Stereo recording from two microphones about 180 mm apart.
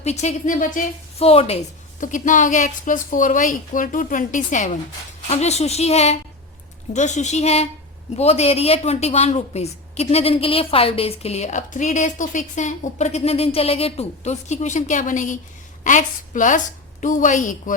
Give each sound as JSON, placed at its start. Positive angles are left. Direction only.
{"t": 0.0, "sound": "a woman's voice", "side_deg": 40}
{"t": 1.2, "sound": "a woman's voice", "side_deg": 35}
{"t": 2.0, "sound": "a woman's voice", "side_deg": 45}